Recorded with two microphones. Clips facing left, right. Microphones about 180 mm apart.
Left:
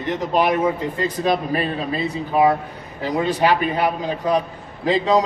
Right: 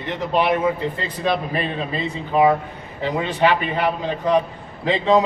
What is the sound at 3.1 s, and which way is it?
Speech, 40° left (ahead or behind).